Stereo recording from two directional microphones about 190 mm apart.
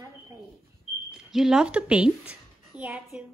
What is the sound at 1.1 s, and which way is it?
Speech, 5° right (ahead or behind).